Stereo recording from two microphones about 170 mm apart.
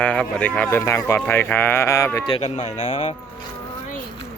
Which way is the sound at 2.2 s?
35° left (ahead or behind).